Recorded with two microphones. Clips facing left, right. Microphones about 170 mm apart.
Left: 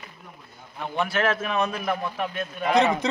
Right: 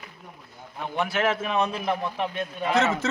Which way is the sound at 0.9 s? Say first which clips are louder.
Left 1 dB; 15° right (ahead or behind).